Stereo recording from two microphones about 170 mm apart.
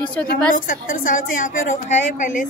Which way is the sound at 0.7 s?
50° left (ahead or behind).